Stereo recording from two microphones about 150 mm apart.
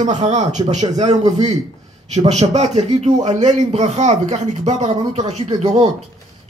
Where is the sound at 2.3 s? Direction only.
50° right (ahead or behind).